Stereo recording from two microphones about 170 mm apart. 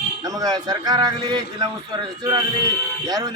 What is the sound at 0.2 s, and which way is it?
A man's voice, 20° right (ahead or behind).